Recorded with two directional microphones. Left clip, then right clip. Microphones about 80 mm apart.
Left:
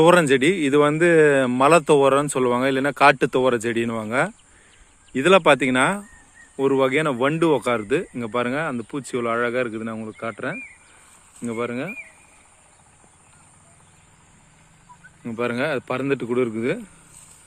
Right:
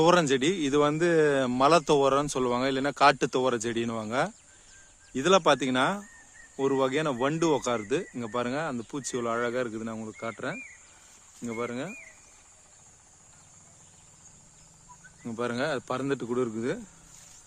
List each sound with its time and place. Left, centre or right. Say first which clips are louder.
0.0 s speech: left 7 dB; centre
11.5 s speech: left 7 dB; left
15.2 s speech: left 6 dB; centre